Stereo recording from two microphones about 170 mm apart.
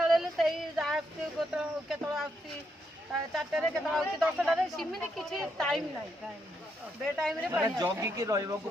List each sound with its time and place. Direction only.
0.0 s a sound: centre (ahead or behind)
3.3 s speech: centre (ahead or behind)
7.0 s speech: centre (ahead or behind)
7.5 s speech: 15° right (ahead or behind)